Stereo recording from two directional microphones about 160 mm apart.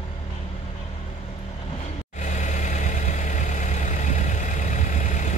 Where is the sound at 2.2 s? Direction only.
50° left (ahead or behind).